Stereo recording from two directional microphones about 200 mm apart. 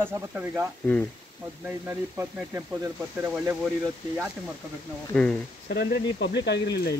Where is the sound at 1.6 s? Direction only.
10° right (ahead or behind).